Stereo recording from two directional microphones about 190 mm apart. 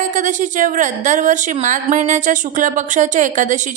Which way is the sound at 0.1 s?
40° right (ahead or behind).